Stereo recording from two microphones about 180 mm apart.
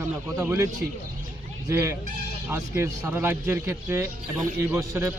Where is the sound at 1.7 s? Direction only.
15° right (ahead or behind).